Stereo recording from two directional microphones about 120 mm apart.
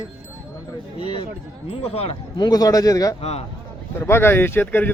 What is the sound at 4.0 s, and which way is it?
Speech, 20° left (ahead or behind).